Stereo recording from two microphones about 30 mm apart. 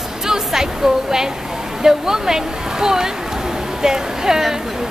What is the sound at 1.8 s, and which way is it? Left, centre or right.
Speech, centre.